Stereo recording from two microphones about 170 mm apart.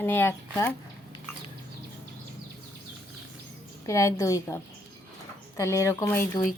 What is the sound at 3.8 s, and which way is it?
Speech, 20° left (ahead or behind).